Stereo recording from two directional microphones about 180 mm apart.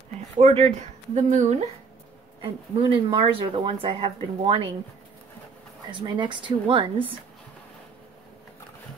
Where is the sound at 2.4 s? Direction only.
30° right (ahead or behind).